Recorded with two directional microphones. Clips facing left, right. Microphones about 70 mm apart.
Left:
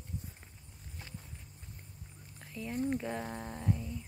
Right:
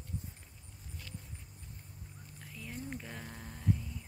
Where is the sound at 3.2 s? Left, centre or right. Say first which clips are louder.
Left 7 dB; left.